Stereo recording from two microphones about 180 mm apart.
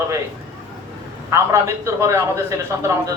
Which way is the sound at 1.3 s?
15° right (ahead or behind).